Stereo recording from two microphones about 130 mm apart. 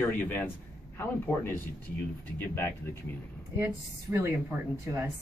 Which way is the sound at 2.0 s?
15° left (ahead or behind).